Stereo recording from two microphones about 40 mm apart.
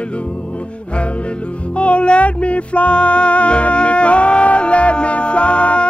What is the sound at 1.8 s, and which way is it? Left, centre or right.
Music, left.